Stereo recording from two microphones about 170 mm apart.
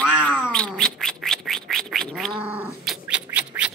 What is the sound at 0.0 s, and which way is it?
Cat, 5° left (ahead or behind).